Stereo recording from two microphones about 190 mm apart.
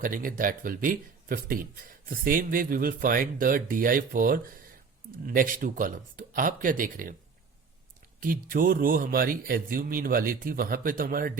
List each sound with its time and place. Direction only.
0.0 s speech: 45° right (ahead or behind)
8.2 s speech: 50° right (ahead or behind)